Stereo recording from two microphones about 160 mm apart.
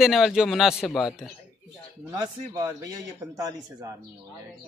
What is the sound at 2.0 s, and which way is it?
Speech, 20° right (ahead or behind).